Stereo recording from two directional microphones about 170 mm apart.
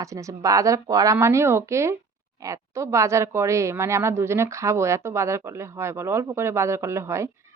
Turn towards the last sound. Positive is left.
turn(degrees=-15)  # may be behind; listen again after turning